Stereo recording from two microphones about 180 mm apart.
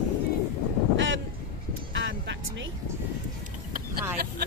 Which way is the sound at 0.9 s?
90° right.